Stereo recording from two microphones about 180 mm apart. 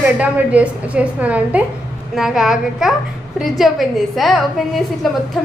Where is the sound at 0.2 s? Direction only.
10° right (ahead or behind).